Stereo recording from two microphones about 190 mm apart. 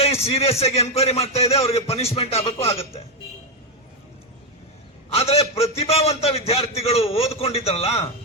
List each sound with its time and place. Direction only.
0.0 s a man's voice: 30° left (ahead or behind)
5.1 s a man's voice: 30° left (ahead or behind)